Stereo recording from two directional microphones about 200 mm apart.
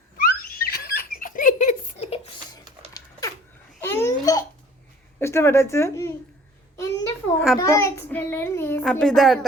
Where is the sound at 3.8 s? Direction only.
10° left (ahead or behind).